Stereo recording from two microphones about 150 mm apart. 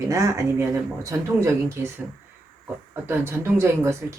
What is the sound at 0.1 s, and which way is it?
Speech, 20° right (ahead or behind).